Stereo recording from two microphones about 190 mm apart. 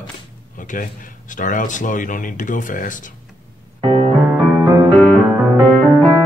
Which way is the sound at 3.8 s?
30° right (ahead or behind).